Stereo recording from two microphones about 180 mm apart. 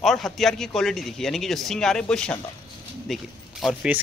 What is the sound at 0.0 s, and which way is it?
Speech, centre (ahead or behind).